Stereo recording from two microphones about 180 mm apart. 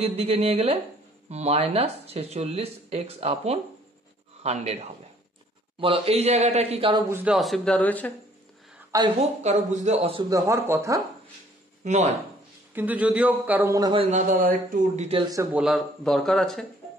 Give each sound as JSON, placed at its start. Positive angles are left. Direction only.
{"t": 0.0, "sound": "speech", "side_deg": -35}
{"t": 7.1, "sound": "speech", "side_deg": -10}
{"t": 7.3, "sound": "speech", "side_deg": 0}
{"t": 8.9, "sound": "a woman's voice", "side_deg": -20}
{"t": 9.4, "sound": "speech", "side_deg": -40}
{"t": 10.3, "sound": "speech", "side_deg": -15}
{"t": 11.8, "sound": "speech", "side_deg": -40}
{"t": 12.7, "sound": "speech", "side_deg": -10}
{"t": 13.7, "sound": "speech", "side_deg": -25}
{"t": 14.1, "sound": "speech", "side_deg": -45}
{"t": 15.0, "sound": "speech", "side_deg": -30}
{"t": 15.5, "sound": "speech", "side_deg": 0}